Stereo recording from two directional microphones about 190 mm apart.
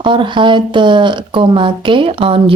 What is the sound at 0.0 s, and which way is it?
Speech, 25° right (ahead or behind).